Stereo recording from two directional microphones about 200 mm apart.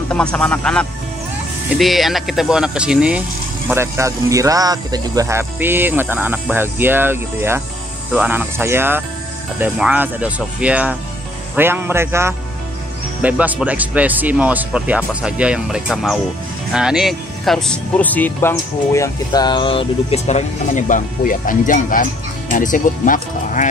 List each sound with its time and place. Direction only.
0.1 s speech: 5° left (ahead or behind); by 23.7 s 40° left (ahead or behind)